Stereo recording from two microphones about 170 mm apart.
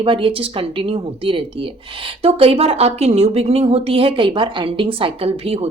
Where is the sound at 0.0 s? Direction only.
30° right (ahead or behind).